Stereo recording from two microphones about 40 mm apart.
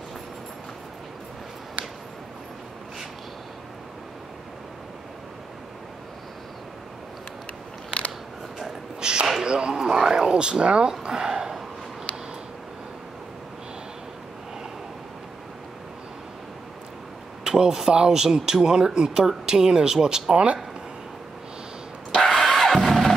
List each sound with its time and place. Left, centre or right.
9.0 s a sound: centre
17.4 s speech: centre
22.1 s music: centre